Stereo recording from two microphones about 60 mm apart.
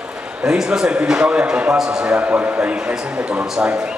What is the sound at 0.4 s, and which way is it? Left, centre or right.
A man's voice, centre.